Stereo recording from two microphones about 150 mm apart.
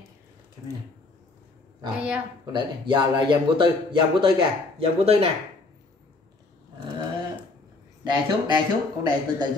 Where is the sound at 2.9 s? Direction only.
30° right (ahead or behind).